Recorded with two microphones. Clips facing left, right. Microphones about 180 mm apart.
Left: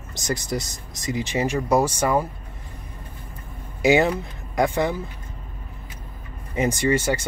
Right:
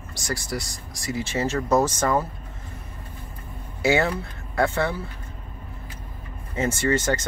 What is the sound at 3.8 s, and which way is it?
Speech, 15° left (ahead or behind).